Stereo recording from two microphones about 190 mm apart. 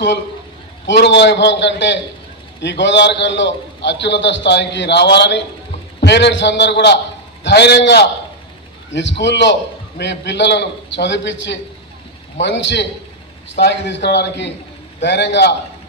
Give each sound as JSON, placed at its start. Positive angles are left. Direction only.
{"t": 0.8, "sound": "a man's voice", "side_deg": 65}